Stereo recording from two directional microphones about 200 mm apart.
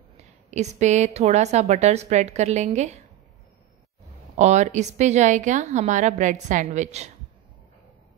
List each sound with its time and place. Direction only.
0.2 s a woman's voice: 35° right (ahead or behind)
4.4 s a woman's voice: 35° right (ahead or behind)